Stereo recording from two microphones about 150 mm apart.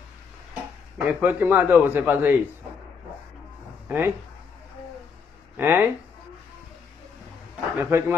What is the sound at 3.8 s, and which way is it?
Speech, 10° right (ahead or behind).